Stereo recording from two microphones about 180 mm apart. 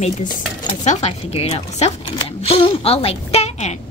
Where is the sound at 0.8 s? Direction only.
40° left (ahead or behind).